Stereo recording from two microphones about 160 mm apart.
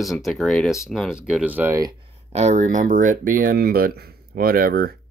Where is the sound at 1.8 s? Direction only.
30° right (ahead or behind); by 5.0 s 70° right (ahead or behind).